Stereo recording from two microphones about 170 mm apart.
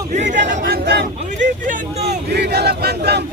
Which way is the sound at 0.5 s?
65° right (ahead or behind).